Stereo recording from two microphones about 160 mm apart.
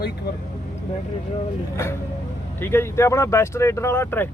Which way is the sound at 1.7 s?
15° left (ahead or behind).